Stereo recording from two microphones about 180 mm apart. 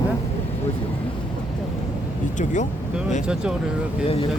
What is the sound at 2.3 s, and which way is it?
Speech, 45° left (ahead or behind).